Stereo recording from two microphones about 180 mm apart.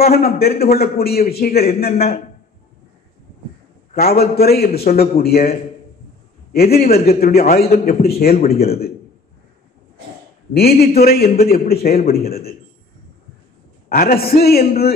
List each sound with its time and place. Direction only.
0.0 s a man's voice: 60° left (ahead or behind)
3.9 s a man's voice: 55° left (ahead or behind)
6.5 s a man's voice: 60° left (ahead or behind)
10.5 s a man's voice: 60° left (ahead or behind)
13.8 s a man's voice: 55° left (ahead or behind)